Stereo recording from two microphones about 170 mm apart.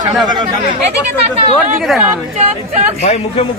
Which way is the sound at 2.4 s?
40° right (ahead or behind).